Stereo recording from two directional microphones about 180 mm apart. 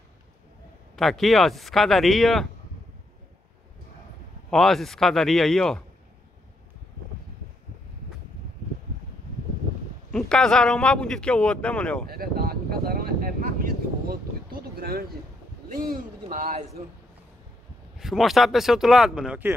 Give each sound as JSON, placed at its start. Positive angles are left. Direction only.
{"t": 0.9, "sound": "a man's voice", "side_deg": 0}
{"t": 4.5, "sound": "a man's voice", "side_deg": 0}
{"t": 10.1, "sound": "a man's voice", "side_deg": 5}
{"t": 12.1, "sound": "a sound", "side_deg": -55}
{"t": 15.7, "sound": "a man's voice", "side_deg": -50}
{"t": 17.9, "sound": "a man's voice", "side_deg": 0}